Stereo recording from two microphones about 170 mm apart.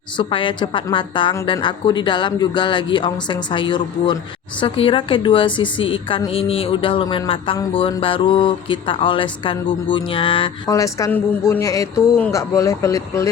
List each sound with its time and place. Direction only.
0.2 s a woman's voice: 30° left (ahead or behind)
10.7 s a woman's voice: 20° left (ahead or behind)